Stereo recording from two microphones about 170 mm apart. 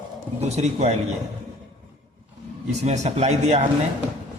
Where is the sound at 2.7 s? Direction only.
40° right (ahead or behind).